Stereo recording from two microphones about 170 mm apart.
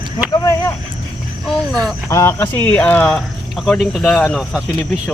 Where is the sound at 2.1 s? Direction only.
15° left (ahead or behind).